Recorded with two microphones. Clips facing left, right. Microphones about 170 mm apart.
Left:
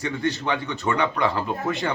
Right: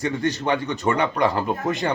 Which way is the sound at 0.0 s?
45° right (ahead or behind).